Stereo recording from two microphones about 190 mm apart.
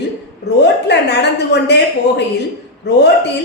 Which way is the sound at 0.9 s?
65° left (ahead or behind).